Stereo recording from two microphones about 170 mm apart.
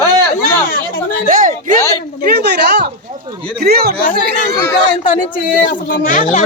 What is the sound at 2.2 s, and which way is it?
Speech, 70° right (ahead or behind).